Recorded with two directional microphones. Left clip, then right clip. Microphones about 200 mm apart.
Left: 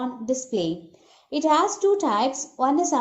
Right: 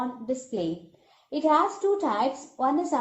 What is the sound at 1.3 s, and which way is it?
Speech, 35° left (ahead or behind).